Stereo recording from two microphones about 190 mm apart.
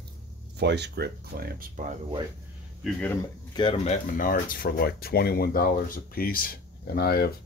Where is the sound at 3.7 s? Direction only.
35° left (ahead or behind); by 7.3 s 55° left (ahead or behind).